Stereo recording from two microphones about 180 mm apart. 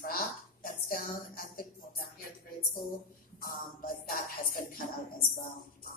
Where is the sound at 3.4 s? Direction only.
50° left (ahead or behind).